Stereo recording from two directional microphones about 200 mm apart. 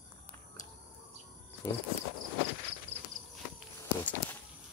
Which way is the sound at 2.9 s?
30° right (ahead or behind).